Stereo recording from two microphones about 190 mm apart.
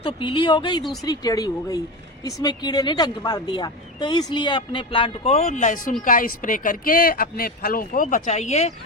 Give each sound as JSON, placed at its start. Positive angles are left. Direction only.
{"t": 0.0, "sound": "a woman's voice", "side_deg": 25}